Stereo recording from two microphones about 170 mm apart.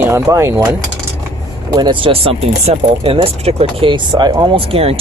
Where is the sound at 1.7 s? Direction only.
25° right (ahead or behind).